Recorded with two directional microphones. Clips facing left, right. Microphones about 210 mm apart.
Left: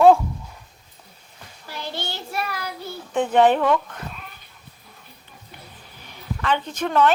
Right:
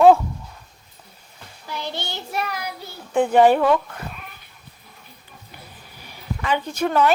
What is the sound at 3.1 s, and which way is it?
Speech, 10° right (ahead or behind).